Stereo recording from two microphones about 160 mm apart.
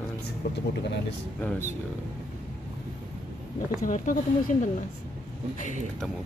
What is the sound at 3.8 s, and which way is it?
Speech, 55° left (ahead or behind).